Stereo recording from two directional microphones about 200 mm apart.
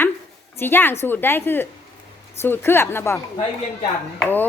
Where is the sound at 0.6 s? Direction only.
10° left (ahead or behind).